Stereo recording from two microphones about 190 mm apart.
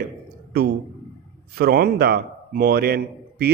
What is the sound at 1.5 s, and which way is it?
A man's voice, 55° right (ahead or behind).